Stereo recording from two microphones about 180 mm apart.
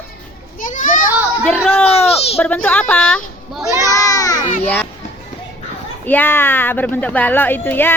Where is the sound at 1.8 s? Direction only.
35° left (ahead or behind).